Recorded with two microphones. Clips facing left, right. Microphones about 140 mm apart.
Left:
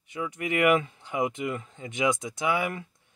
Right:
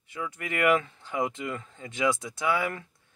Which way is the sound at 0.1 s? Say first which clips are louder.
Left 4 dB; 20° left (ahead or behind).